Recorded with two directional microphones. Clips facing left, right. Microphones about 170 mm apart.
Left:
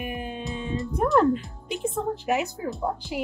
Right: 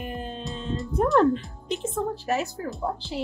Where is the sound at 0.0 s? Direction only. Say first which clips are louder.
Left 1 dB; 10° left (ahead or behind).